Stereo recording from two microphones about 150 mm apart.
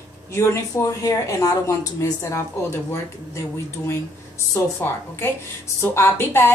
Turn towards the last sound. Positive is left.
turn(degrees=15)  # may be behind; listen again after turning